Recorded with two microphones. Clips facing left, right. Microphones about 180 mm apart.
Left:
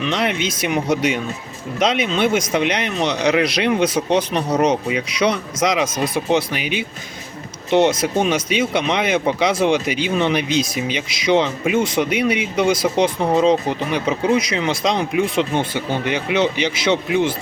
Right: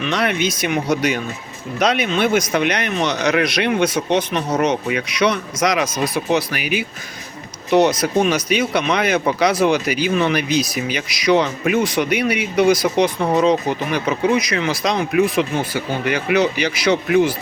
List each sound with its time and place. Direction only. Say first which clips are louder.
0.1 s speech: right 4 dB; 25° left (ahead or behind)